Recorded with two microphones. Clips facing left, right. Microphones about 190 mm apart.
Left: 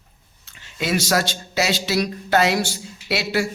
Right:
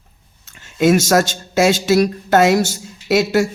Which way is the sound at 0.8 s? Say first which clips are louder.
Right 8 dB; 45° right (ahead or behind).